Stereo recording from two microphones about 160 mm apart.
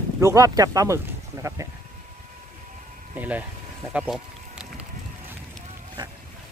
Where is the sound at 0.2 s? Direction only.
20° right (ahead or behind).